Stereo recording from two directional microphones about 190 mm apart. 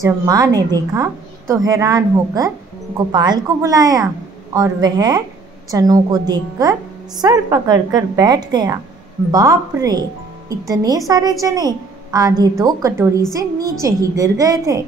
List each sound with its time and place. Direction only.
0.0 s a woman's voice: 20° right (ahead or behind)